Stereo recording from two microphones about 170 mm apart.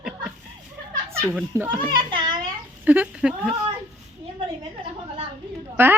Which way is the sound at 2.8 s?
10° right (ahead or behind).